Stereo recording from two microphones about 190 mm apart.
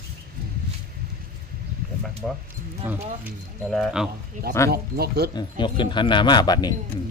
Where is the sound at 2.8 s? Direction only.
10° right (ahead or behind).